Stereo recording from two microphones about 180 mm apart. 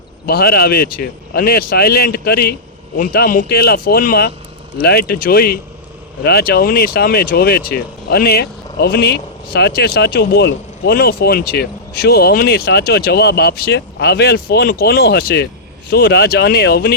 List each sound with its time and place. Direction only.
0.3 s speech: 60° left (ahead or behind)